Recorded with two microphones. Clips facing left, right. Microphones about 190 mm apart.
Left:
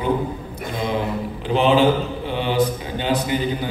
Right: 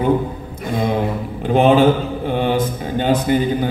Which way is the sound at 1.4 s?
50° right (ahead or behind).